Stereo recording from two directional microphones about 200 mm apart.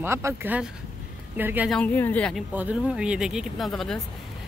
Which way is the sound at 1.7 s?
10° left (ahead or behind).